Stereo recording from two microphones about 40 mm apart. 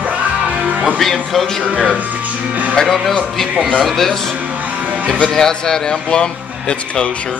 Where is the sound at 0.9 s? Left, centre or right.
Centre.